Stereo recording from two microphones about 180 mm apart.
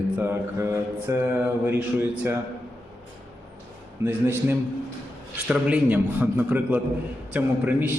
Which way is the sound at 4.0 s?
10° right (ahead or behind).